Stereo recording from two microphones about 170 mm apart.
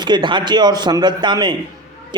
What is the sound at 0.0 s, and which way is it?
A man's voice, 25° right (ahead or behind).